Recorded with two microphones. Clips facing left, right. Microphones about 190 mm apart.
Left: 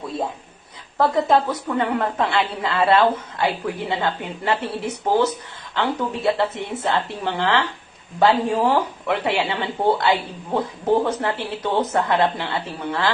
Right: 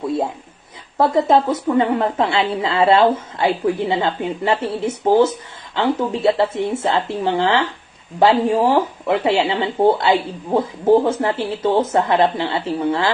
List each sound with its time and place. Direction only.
0.9 s a woman's voice: 20° right (ahead or behind)